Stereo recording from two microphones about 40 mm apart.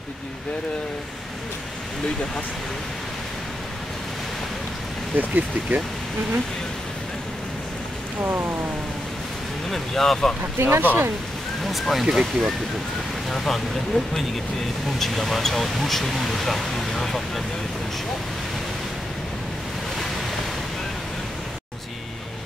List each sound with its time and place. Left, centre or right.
5.1 s speech: right
8.2 s rain: right
9.7 s speech: centre
10.4 s rain: right
10.8 s speech: right
11.6 s speech: centre
13.3 s speech: centre